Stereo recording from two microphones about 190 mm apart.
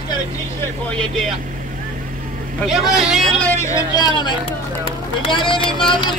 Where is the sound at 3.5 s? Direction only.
15° left (ahead or behind).